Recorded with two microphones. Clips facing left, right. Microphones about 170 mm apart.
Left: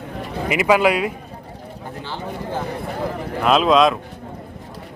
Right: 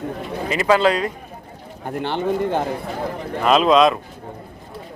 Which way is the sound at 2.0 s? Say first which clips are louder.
Right 10 dB; 65° right (ahead or behind).